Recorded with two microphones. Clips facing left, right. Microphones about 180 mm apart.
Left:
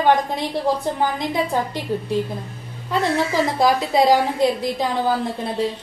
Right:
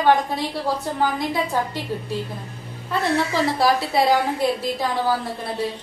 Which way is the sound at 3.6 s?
15° left (ahead or behind).